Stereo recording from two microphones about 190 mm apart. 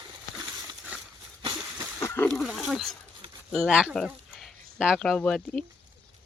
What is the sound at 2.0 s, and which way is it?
Wild animals, 15° left (ahead or behind).